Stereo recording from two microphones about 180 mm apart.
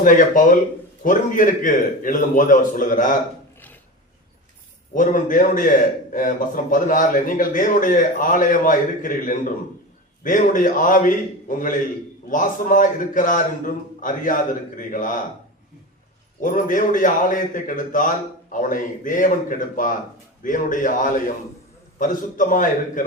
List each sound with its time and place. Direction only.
0.0 s a man's voice: 45° left (ahead or behind)
4.9 s a man's voice: 45° left (ahead or behind)
16.4 s a man's voice: 45° left (ahead or behind)